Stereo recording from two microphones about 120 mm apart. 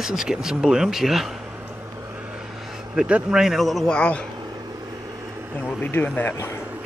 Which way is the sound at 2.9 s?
10° right (ahead or behind).